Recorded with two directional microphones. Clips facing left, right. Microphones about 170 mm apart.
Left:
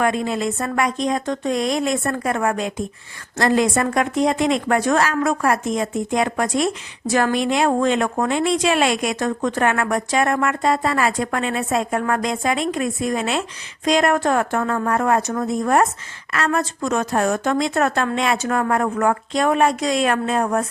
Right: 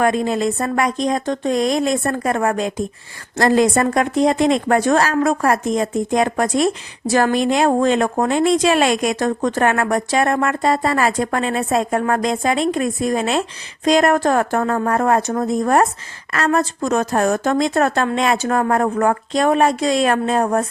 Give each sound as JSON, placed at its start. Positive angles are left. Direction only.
{"t": 0.0, "sound": "a woman's voice", "side_deg": -40}